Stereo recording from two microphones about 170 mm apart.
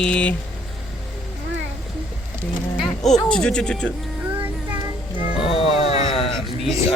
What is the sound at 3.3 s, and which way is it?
Speech, 5° left (ahead or behind).